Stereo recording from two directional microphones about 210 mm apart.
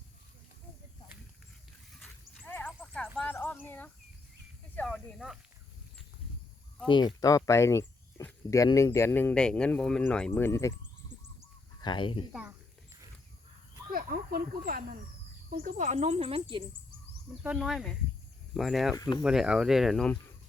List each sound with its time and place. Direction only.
2.4 s horse: 10° left (ahead or behind)
3.2 s a sound: 10° left (ahead or behind)
4.7 s cricket: 5° left (ahead or behind)
6.8 s speech: 20° left (ahead or behind)
11.8 s speech: 20° left (ahead or behind)
12.3 s speech: 5° right (ahead or behind)
13.9 s speech: 45° right (ahead or behind); by 16.6 s 25° right (ahead or behind)
17.4 s speech: 5° right (ahead or behind)
18.9 s speech: 15° left (ahead or behind)
19.2 s speech: 5° right (ahead or behind)